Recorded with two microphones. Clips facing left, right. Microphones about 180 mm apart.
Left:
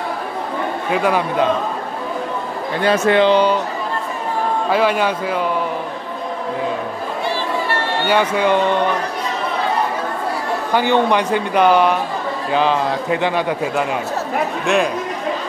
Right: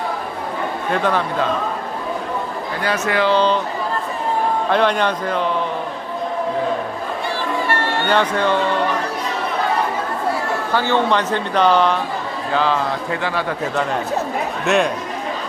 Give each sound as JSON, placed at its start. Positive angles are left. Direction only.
{"t": 0.9, "sound": "speech", "side_deg": 10}
{"t": 2.8, "sound": "speech", "side_deg": 25}
{"t": 4.6, "sound": "speech", "side_deg": 5}
{"t": 8.1, "sound": "speech", "side_deg": 10}
{"t": 10.7, "sound": "speech", "side_deg": 15}
{"t": 14.7, "sound": "speech", "side_deg": 0}